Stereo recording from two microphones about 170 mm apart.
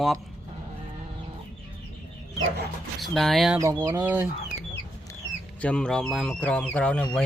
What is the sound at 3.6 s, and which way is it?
Speech, 20° right (ahead or behind).